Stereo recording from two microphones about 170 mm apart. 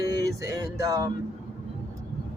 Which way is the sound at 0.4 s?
20° right (ahead or behind).